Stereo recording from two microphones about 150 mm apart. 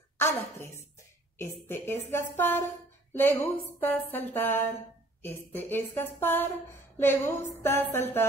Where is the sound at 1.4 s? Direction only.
15° left (ahead or behind).